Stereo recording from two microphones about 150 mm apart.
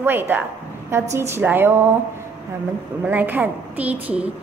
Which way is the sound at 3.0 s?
10° right (ahead or behind).